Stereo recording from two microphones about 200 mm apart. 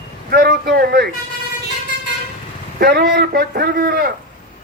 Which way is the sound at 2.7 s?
50° right (ahead or behind).